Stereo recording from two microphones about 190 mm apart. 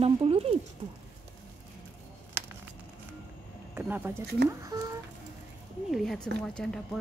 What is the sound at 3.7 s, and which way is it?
Speech, 10° right (ahead or behind).